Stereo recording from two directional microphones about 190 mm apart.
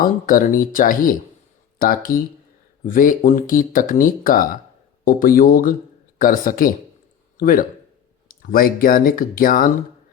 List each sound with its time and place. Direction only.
0.0 s a man's voice: 45° left (ahead or behind)